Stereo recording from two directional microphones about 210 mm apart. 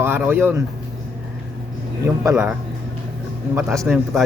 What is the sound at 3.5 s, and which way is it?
Speech, 5° right (ahead or behind).